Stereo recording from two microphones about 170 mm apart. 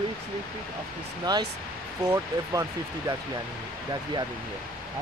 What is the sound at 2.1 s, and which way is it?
Speech, 20° right (ahead or behind).